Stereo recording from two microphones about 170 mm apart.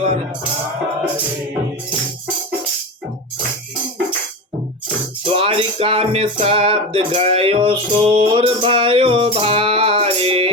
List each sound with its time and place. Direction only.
5.2 s music: 30° right (ahead or behind)